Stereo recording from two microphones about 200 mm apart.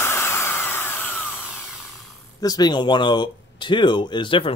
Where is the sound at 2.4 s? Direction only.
20° left (ahead or behind).